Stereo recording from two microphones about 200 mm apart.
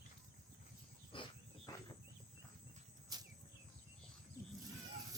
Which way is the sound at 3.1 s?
20° right (ahead or behind).